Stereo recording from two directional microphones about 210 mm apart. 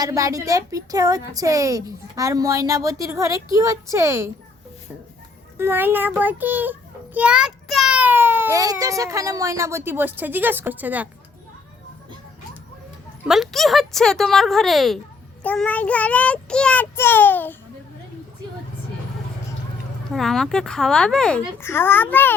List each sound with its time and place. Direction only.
0.0 s a woman's voice: 15° right (ahead or behind)
5.5 s a child's voice: 10° right (ahead or behind)
13.2 s speech: centre (ahead or behind)
15.4 s child singing: 5° left (ahead or behind)
20.1 s speech: centre (ahead or behind)
21.6 s child singing: 10° left (ahead or behind)